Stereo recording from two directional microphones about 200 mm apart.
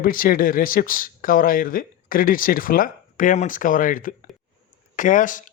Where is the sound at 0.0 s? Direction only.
45° left (ahead or behind).